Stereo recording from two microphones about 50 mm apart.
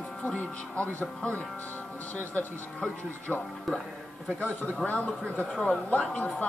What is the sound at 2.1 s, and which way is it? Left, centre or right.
Speech, left.